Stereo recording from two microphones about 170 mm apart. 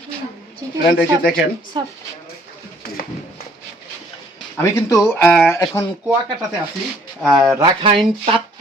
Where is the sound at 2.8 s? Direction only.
60° left (ahead or behind).